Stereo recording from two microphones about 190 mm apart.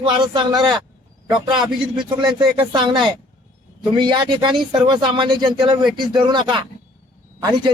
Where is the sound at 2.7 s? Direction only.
25° right (ahead or behind).